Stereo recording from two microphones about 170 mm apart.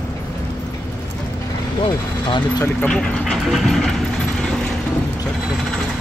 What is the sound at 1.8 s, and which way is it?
Speech, 25° left (ahead or behind).